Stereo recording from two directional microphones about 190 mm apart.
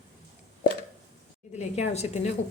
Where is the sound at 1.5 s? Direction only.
35° left (ahead or behind).